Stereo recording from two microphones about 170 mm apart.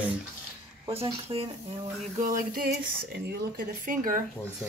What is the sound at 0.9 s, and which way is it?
Speech, 35° right (ahead or behind).